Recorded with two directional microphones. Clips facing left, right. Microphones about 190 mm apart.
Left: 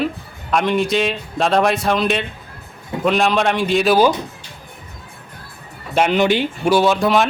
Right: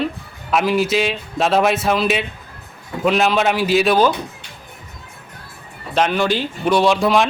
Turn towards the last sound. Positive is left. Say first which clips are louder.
# even
turn(degrees=0)  # may be behind; listen again after turning